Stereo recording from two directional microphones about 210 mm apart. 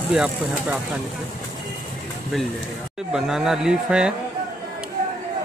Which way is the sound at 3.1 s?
5° right (ahead or behind).